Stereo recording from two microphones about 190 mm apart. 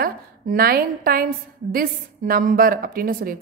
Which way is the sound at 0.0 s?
50° right (ahead or behind).